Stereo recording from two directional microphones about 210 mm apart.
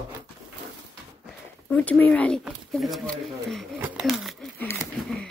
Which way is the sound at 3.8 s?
5° right (ahead or behind).